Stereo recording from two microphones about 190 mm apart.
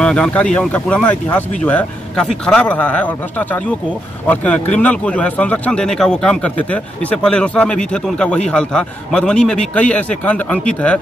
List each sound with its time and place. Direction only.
0.0 s a man's voice: 5° left (ahead or behind)